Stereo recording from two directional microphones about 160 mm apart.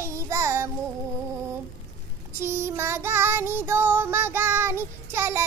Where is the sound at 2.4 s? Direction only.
15° right (ahead or behind).